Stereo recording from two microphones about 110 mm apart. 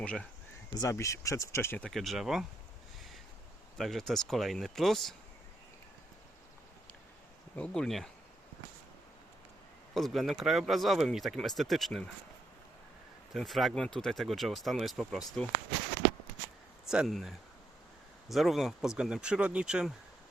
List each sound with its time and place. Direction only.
0.0 s speech: 10° left (ahead or behind)
0.7 s speech: 30° left (ahead or behind)
1.8 s speech: centre (ahead or behind)
3.8 s speech: centre (ahead or behind)
7.5 s speech: 10° left (ahead or behind)
9.9 s speech: centre (ahead or behind)
13.3 s speech: centre (ahead or behind)
16.9 s speech: 5° right (ahead or behind)